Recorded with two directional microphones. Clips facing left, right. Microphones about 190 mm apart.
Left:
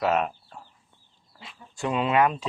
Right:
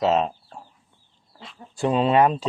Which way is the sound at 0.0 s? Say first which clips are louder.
Right 3 dB; 25° right (ahead or behind).